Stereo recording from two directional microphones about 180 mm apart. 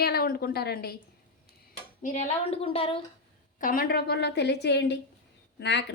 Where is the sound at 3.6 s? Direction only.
50° left (ahead or behind); by 5.8 s 75° left (ahead or behind).